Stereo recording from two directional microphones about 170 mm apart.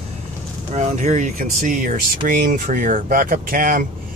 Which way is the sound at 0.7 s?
45° right (ahead or behind).